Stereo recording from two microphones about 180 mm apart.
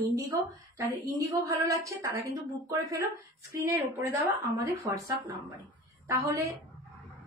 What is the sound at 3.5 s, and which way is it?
A woman's voice, 15° right (ahead or behind).